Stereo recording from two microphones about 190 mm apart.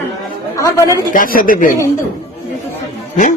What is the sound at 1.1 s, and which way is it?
Speech, 45° left (ahead or behind).